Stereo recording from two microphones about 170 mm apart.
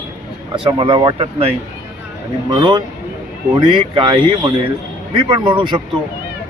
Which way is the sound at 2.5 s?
25° right (ahead or behind).